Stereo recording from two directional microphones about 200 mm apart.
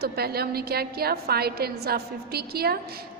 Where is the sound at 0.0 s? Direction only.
50° right (ahead or behind).